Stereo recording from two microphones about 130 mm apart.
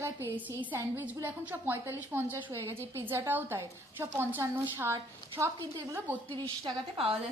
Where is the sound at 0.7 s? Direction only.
15° right (ahead or behind).